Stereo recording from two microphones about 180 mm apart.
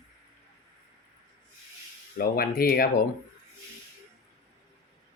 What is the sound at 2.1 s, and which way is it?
Speech, 55° left (ahead or behind).